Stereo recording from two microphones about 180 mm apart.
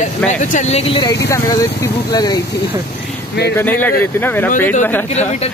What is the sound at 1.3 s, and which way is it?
Speech, 15° left (ahead or behind).